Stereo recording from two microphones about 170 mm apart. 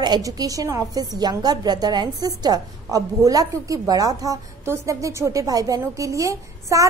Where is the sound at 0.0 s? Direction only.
25° right (ahead or behind).